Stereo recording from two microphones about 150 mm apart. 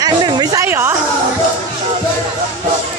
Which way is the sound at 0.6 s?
15° right (ahead or behind).